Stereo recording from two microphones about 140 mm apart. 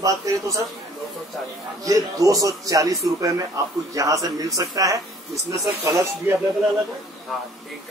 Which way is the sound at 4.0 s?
25° right (ahead or behind).